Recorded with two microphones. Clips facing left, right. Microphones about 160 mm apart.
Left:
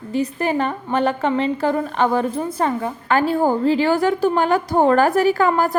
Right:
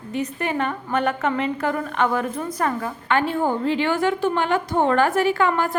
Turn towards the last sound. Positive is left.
turn(degrees=40)  # may be behind; listen again after turning